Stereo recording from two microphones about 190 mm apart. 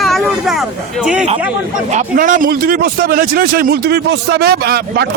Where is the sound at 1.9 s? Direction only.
45° right (ahead or behind).